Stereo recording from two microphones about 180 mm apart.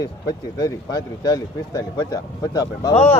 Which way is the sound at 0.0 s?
20° left (ahead or behind).